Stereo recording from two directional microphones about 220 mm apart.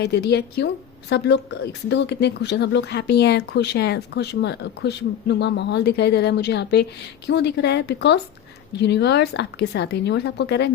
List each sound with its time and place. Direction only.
0.0 s speech: 50° left (ahead or behind)